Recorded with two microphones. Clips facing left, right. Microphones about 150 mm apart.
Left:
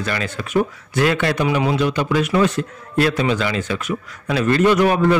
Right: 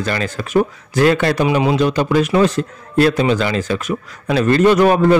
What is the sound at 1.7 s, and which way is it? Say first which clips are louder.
A man's voice: right 4 dB; 40° right (ahead or behind).